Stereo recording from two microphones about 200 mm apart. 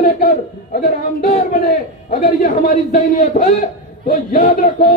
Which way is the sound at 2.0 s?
40° left (ahead or behind).